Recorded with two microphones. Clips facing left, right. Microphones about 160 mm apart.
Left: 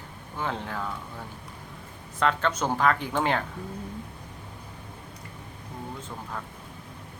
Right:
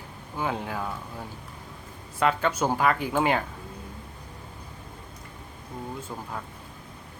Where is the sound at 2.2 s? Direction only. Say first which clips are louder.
Right 1 dB; 10° right (ahead or behind).